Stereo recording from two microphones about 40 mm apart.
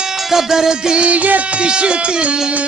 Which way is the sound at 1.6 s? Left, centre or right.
Right.